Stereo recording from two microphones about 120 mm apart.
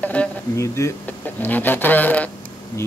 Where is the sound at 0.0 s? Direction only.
10° left (ahead or behind).